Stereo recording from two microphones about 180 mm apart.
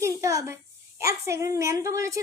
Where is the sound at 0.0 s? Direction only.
15° right (ahead or behind).